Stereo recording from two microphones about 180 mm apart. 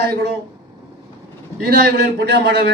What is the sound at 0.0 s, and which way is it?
Speech, 60° right (ahead or behind).